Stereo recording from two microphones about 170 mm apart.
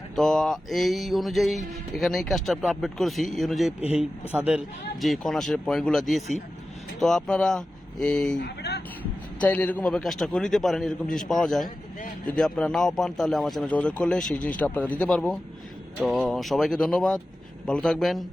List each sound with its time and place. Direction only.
0.2 s mantra: 5° left (ahead or behind)
8.4 s music: 70° left (ahead or behind)
9.4 s mantra: 10° left (ahead or behind)
14.4 s speech: 10° left (ahead or behind)
16.0 s mantra: centre (ahead or behind)